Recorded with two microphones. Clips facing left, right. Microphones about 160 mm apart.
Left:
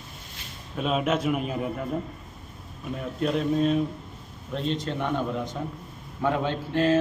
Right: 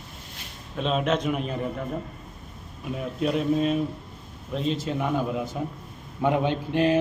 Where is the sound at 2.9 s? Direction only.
5° right (ahead or behind).